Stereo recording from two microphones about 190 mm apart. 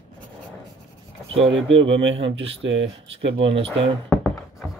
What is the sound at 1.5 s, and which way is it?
Speech, 80° right.